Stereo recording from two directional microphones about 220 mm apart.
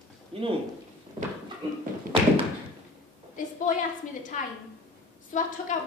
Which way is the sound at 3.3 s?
35° left (ahead or behind).